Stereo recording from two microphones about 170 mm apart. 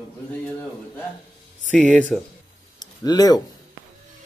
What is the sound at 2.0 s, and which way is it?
Speech, 5° left (ahead or behind).